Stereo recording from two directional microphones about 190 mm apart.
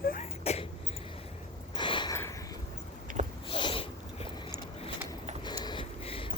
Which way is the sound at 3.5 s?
25° left (ahead or behind).